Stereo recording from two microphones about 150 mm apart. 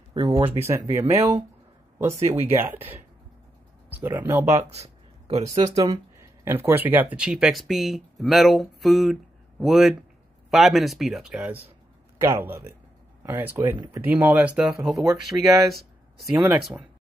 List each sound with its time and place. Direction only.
0.1 s speech: 30° right (ahead or behind)
0.6 s speech: 15° right (ahead or behind)
2.0 s speech: 20° right (ahead or behind)
4.6 s a sound: 45° right (ahead or behind)
5.8 s speech: 20° right (ahead or behind)
12.2 s speech: 20° right (ahead or behind)